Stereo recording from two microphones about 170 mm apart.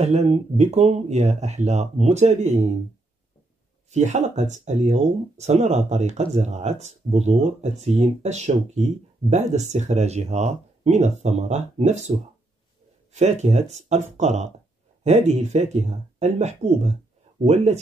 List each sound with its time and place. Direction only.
0.0 s speech: 40° right (ahead or behind)
3.9 s speech: 45° right (ahead or behind)
13.1 s speech: 40° right (ahead or behind)